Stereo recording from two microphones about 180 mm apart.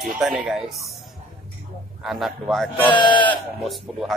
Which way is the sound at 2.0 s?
Centre (ahead or behind).